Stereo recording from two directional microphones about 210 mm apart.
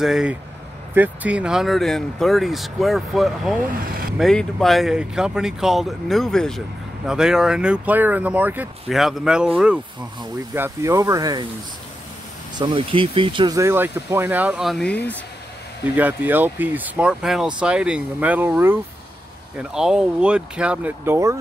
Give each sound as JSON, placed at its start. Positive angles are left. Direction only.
{"t": 0.0, "sound": "speech", "side_deg": -5}
{"t": 3.8, "sound": "speech", "side_deg": -45}
{"t": 4.2, "sound": "speech", "side_deg": 0}
{"t": 10.5, "sound": "speech", "side_deg": -10}
{"t": 12.5, "sound": "speech", "side_deg": -25}
{"t": 16.0, "sound": "speech", "side_deg": -10}